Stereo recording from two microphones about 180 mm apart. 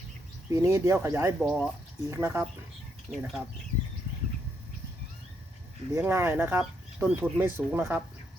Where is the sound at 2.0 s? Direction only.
15° right (ahead or behind).